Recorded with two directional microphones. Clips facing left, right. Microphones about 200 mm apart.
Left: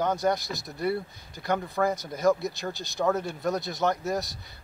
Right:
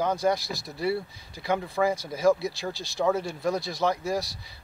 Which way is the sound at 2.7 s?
20° left (ahead or behind).